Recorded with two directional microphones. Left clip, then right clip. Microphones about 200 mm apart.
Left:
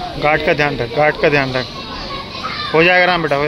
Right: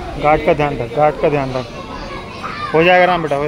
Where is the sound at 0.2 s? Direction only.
Centre (ahead or behind).